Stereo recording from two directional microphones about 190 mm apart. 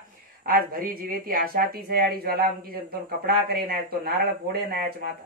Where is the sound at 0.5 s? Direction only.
50° right (ahead or behind).